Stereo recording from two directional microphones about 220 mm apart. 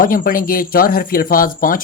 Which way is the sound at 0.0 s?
40° left (ahead or behind).